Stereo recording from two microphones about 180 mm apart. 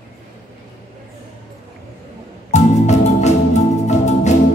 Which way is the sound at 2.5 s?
40° left (ahead or behind).